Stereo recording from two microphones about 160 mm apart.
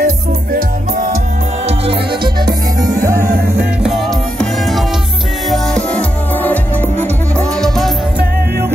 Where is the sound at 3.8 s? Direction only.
Centre (ahead or behind).